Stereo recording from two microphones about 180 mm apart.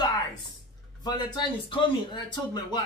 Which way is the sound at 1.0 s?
25° left (ahead or behind).